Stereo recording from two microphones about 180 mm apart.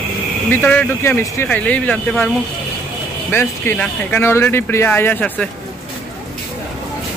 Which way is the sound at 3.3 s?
10° left (ahead or behind).